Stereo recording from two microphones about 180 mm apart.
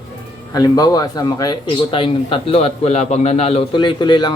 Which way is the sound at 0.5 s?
20° left (ahead or behind).